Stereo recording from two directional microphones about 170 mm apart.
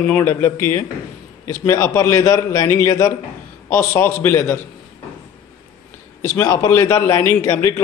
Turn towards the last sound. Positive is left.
turn(degrees=15)  # may be behind; listen again after turning